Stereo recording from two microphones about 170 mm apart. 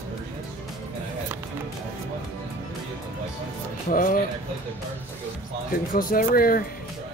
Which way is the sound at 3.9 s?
55° left (ahead or behind).